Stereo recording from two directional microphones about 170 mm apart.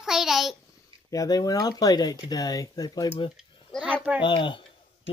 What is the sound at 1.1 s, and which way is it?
Speech, 20° left (ahead or behind).